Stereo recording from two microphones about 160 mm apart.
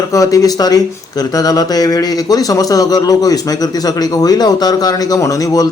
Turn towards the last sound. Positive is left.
turn(degrees=20)  # may be behind; listen again after turning